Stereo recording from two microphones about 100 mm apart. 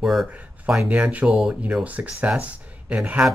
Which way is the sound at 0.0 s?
5° right (ahead or behind).